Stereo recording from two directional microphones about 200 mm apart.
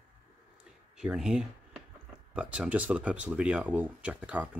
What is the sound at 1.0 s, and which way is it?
Speech, 5° right (ahead or behind).